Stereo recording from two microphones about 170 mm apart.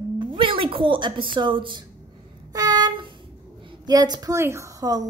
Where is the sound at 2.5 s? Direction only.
20° right (ahead or behind).